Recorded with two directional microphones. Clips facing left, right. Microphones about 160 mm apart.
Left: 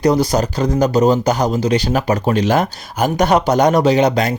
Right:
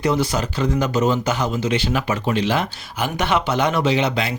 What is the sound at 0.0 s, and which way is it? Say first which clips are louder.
Speech: left 6 dB; 40° left (ahead or behind).